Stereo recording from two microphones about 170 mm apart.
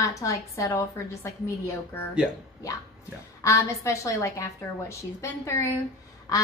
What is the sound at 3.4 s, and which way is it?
A woman's voice, 15° left (ahead or behind).